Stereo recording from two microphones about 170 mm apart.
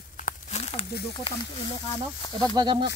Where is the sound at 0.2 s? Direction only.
40° left (ahead or behind).